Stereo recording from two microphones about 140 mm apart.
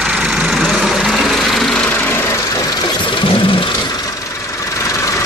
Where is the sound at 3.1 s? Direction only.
35° left (ahead or behind).